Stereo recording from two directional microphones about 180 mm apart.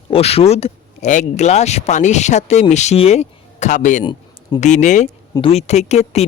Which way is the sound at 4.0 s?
25° left (ahead or behind).